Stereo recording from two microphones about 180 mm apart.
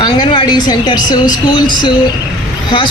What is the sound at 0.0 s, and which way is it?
Speech, 25° left (ahead or behind).